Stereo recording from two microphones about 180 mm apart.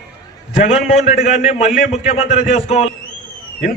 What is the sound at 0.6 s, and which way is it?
A man's voice, 40° left (ahead or behind).